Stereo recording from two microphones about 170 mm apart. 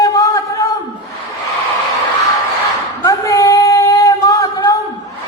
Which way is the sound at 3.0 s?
20° left (ahead or behind).